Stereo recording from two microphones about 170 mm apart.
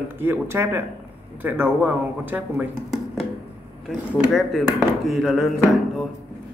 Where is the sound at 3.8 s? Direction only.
Centre (ahead or behind).